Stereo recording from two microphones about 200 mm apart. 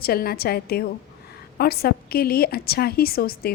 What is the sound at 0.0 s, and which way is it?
A woman's voice, 50° left (ahead or behind).